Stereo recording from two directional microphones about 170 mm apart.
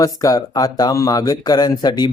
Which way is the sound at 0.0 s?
20° left (ahead or behind).